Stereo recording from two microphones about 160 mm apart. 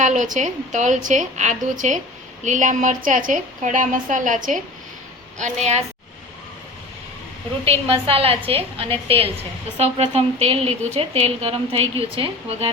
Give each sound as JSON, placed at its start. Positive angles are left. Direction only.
{"t": 0.0, "sound": "a woman's voice", "side_deg": -50}
{"t": 7.6, "sound": "a woman's voice", "side_deg": -35}